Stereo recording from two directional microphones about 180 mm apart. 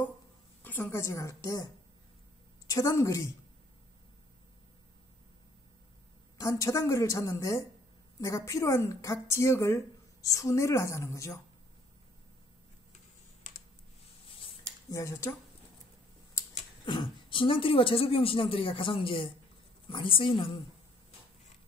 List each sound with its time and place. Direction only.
0.6 s a woman's voice: 10° left (ahead or behind)
6.3 s a woman's voice: 20° left (ahead or behind)
14.9 s a woman's voice: 15° left (ahead or behind)
16.8 s speech: 25° left (ahead or behind)